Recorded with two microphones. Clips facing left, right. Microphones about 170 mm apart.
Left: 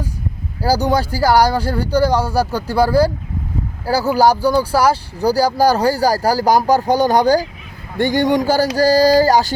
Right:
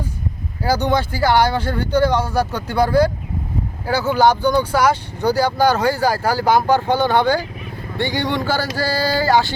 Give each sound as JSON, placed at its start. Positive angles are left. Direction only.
{"t": 0.6, "sound": "speech", "side_deg": 35}